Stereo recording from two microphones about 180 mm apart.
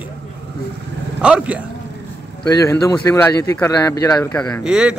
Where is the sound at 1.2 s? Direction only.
5° right (ahead or behind).